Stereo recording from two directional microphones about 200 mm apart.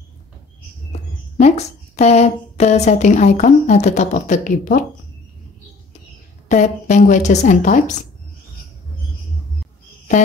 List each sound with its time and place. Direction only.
0.9 s a sound: 35° left (ahead or behind)
2.5 s speech: 35° left (ahead or behind)
6.5 s speech: 35° left (ahead or behind)